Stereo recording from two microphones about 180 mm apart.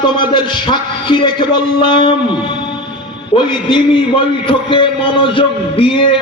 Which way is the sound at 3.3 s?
25° left (ahead or behind).